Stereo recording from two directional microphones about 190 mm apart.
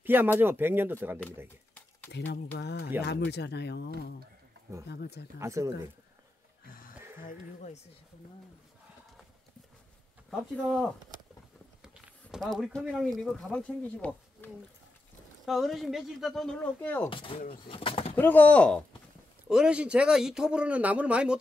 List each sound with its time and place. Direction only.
0.0 s speech: 10° right (ahead or behind)
2.1 s speech: 60° left (ahead or behind)
5.4 s speech: 15° right (ahead or behind)
11.8 s speech: centre (ahead or behind)
17.1 s speech: 25° left (ahead or behind)
18.1 s speech: 10° left (ahead or behind)
19.4 s speech: 5° right (ahead or behind)